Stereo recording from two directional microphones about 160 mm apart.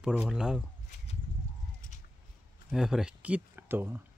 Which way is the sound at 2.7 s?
5° right (ahead or behind).